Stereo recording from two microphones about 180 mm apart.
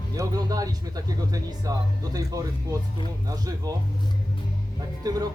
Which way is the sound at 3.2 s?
20° right (ahead or behind).